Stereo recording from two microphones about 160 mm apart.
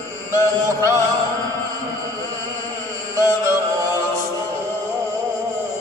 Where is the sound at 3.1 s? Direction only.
20° right (ahead or behind).